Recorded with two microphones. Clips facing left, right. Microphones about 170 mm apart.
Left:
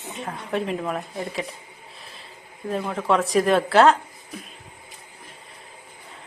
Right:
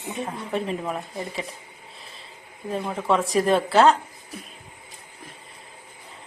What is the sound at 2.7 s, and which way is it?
A woman's voice, centre (ahead or behind).